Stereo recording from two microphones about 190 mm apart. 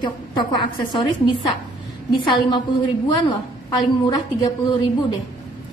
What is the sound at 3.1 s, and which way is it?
Speech, 20° left (ahead or behind).